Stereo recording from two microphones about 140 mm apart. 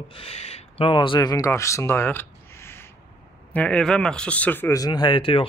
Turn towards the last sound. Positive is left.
turn(degrees=40)  # may be behind; listen again after turning